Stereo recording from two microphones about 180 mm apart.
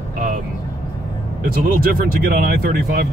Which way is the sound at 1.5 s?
50° right (ahead or behind).